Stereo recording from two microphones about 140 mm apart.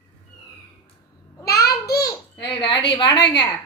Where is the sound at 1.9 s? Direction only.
25° left (ahead or behind).